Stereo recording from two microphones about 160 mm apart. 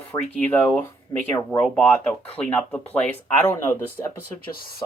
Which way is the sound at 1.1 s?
20° left (ahead or behind).